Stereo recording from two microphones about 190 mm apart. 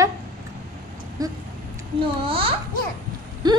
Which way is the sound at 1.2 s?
20° right (ahead or behind).